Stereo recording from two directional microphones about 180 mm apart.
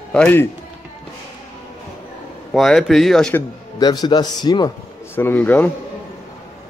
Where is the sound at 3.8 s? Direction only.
20° left (ahead or behind).